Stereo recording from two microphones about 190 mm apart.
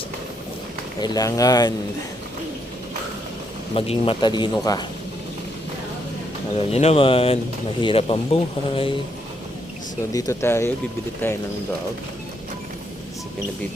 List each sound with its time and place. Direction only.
1.0 s speech: 20° left (ahead or behind)
3.8 s speech: 30° left (ahead or behind)
6.6 s speech: 35° left (ahead or behind)
10.1 s speech: 15° left (ahead or behind)